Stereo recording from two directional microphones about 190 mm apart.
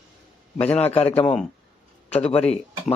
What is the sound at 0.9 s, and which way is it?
Speech, 30° left (ahead or behind).